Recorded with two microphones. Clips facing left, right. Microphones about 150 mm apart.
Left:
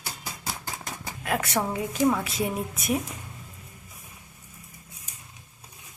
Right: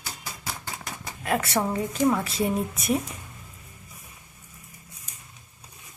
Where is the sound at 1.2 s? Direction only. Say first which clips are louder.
Right 2 dB; centre (ahead or behind).